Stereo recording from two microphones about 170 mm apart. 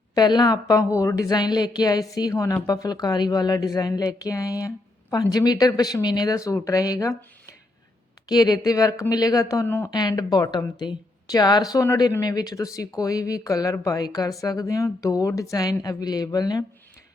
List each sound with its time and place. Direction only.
0.1 s a woman's voice: 25° left (ahead or behind)
8.3 s a woman's voice: 25° left (ahead or behind)